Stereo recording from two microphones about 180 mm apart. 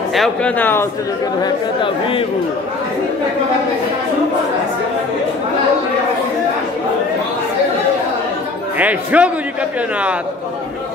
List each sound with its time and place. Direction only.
0.1 s speech: 5° left (ahead or behind)
1.4 s speech: 30° left (ahead or behind)
8.7 s a man's voice: 10° right (ahead or behind)